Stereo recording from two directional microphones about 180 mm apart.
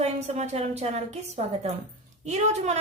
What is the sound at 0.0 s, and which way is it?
A woman's voice, 35° right (ahead or behind).